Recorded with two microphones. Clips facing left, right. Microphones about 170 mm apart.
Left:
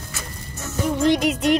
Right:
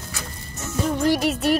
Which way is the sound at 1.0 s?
20° left (ahead or behind).